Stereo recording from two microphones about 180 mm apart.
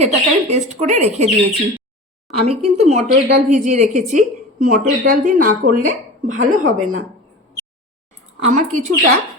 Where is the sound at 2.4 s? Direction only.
35° right (ahead or behind).